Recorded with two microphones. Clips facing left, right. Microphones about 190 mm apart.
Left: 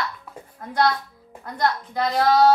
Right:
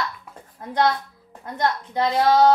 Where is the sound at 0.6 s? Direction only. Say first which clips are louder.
Even; 25° right (ahead or behind).